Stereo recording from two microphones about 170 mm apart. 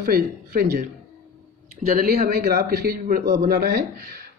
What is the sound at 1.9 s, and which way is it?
A woman's voice, 60° right (ahead or behind).